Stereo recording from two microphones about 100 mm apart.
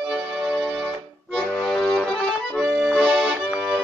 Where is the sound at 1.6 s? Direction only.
5° left (ahead or behind).